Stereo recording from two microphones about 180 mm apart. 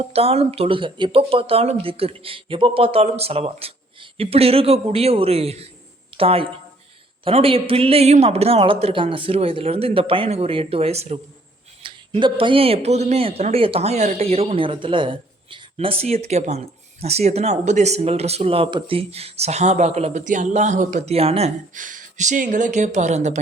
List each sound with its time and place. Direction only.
0.0 s speech: 35° right (ahead or behind)